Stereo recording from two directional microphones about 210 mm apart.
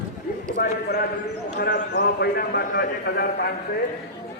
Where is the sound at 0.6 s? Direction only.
45° left (ahead or behind).